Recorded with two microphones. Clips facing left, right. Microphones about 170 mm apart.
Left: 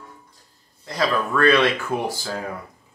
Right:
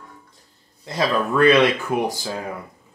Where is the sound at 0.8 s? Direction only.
20° right (ahead or behind).